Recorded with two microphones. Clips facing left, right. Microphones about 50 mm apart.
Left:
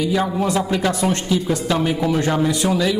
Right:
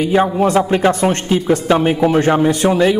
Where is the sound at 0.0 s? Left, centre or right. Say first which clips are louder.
Right 6 dB; right.